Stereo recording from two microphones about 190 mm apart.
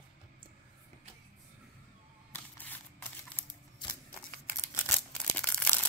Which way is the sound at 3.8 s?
25° left (ahead or behind).